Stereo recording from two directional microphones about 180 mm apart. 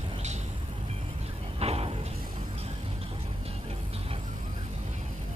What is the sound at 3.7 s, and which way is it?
Music, 35° right (ahead or behind).